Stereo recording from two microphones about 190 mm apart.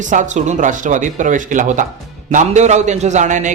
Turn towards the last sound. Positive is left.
turn(degrees=-40)  # may be behind; listen again after turning